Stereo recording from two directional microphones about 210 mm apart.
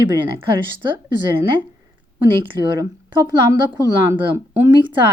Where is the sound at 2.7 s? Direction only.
20° right (ahead or behind).